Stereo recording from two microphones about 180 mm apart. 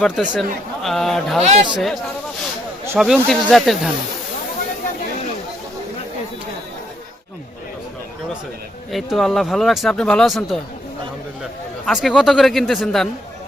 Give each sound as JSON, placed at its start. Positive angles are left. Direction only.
{"t": 0.0, "sound": "speech", "side_deg": 0}
{"t": 1.4, "sound": "a man's voice", "side_deg": -35}
{"t": 3.0, "sound": "speech", "side_deg": 0}
{"t": 8.9, "sound": "speech", "side_deg": 0}
{"t": 11.9, "sound": "speech", "side_deg": 0}